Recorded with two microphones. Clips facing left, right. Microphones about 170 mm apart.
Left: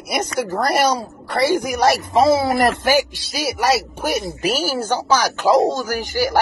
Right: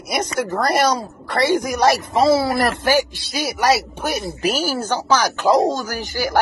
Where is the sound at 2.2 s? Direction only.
20° left (ahead or behind).